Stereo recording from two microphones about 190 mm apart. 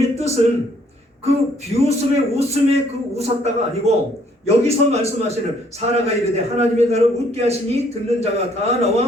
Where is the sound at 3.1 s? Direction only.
35° right (ahead or behind).